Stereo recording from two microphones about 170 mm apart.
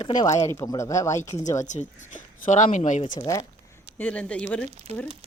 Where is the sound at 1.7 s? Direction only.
45° left (ahead or behind).